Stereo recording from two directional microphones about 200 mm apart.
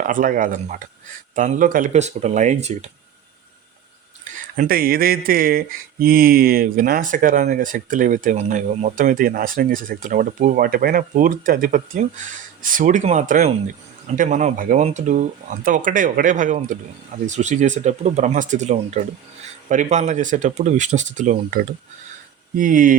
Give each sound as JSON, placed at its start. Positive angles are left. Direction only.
{"t": 0.0, "sound": "speech", "side_deg": -40}
{"t": 4.2, "sound": "speech", "side_deg": -45}